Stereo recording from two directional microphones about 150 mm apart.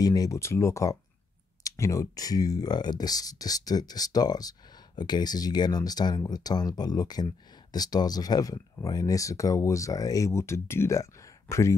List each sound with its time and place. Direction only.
0.0 s speech: 25° left (ahead or behind)